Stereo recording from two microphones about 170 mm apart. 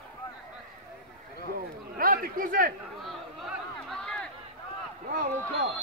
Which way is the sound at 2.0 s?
60° right (ahead or behind).